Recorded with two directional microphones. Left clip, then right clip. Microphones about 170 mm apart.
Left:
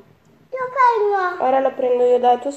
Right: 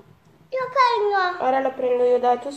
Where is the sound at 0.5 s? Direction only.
25° right (ahead or behind).